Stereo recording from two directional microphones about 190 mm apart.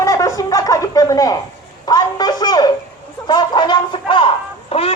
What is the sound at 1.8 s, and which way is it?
Speech, 20° left (ahead or behind).